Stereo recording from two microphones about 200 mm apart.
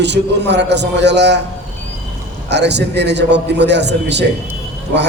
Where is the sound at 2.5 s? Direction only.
60° right (ahead or behind).